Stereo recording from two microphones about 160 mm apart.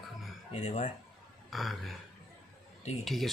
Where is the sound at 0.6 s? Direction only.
45° left (ahead or behind).